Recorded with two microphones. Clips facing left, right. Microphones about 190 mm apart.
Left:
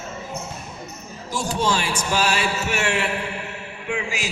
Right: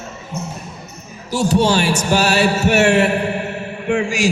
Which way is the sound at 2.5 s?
65° right (ahead or behind).